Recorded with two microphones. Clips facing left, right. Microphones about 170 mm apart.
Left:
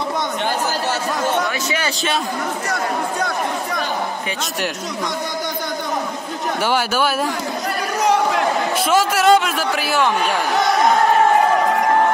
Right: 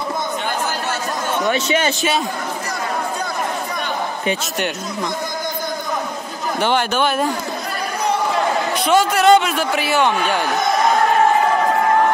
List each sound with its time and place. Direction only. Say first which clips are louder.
1.5 s a man's voice: right 5 dB; 25° right (ahead or behind)
2.7 s chatter: left 1 dB; 70° left (ahead or behind)
6.6 s a man's voice: right 2 dB; 5° left (ahead or behind)
8.8 s a man's voice: right 2 dB; 5° left (ahead or behind)